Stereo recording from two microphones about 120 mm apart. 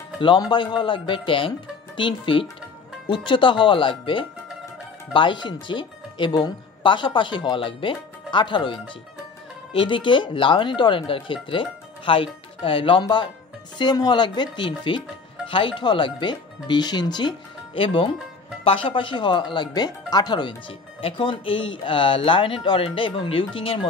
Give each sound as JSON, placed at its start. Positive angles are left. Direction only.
{"t": 0.2, "sound": "speech", "side_deg": 40}
{"t": 9.8, "sound": "speech", "side_deg": 45}
{"t": 17.7, "sound": "speech", "side_deg": 50}